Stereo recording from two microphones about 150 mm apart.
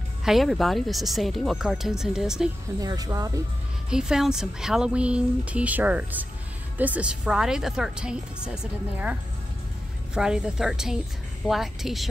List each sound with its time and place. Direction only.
0.2 s speech: centre (ahead or behind)
2.8 s speech: 25° right (ahead or behind)
3.9 s a woman's voice: 5° right (ahead or behind)
10.1 s speech: 5° right (ahead or behind)